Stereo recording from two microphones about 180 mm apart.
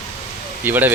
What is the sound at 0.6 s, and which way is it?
Speech, 10° right (ahead or behind).